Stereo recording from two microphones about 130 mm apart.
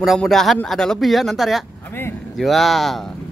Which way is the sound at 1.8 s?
15° left (ahead or behind).